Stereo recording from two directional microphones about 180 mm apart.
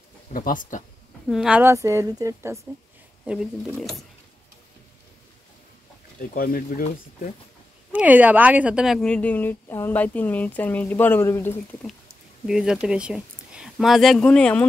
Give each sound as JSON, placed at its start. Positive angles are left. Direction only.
{"t": 0.3, "sound": "speech", "side_deg": 50}
{"t": 1.3, "sound": "a woman's voice", "side_deg": -5}
{"t": 3.3, "sound": "speech", "side_deg": 0}
{"t": 6.3, "sound": "speech", "side_deg": 55}
{"t": 7.9, "sound": "speech", "side_deg": -10}
{"t": 12.4, "sound": "speech", "side_deg": -5}